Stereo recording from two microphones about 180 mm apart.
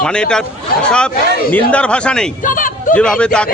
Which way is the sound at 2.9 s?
5° left (ahead or behind).